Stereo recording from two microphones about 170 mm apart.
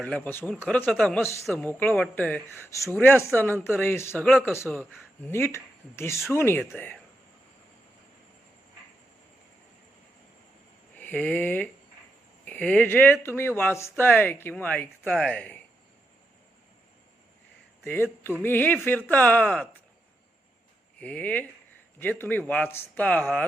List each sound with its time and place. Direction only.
0.0 s speech: 10° left (ahead or behind)
1.2 s speech: 15° left (ahead or behind)
1.6 s speech: 5° left (ahead or behind)
4.3 s speech: centre (ahead or behind)
4.5 s speech: 10° left (ahead or behind)
10.9 s speech: 10° left (ahead or behind)
17.8 s speech: 10° left (ahead or behind)
21.0 s speech: 5° left (ahead or behind)